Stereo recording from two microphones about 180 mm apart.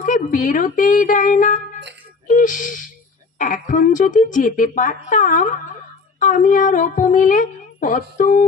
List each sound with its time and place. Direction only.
0.0 s speech: 45° left (ahead or behind)